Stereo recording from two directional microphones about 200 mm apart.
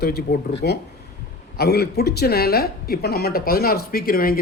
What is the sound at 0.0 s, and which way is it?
Speech, 50° left (ahead or behind).